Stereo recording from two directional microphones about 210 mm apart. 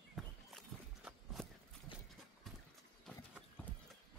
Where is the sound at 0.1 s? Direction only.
Centre (ahead or behind).